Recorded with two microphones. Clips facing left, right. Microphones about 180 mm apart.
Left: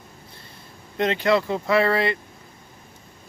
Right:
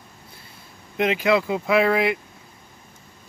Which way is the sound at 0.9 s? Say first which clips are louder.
Even; 5° right (ahead or behind).